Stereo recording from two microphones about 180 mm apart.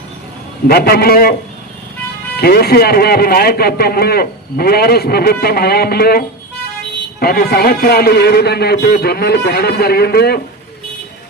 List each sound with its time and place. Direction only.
0.7 s speech: 60° left (ahead or behind)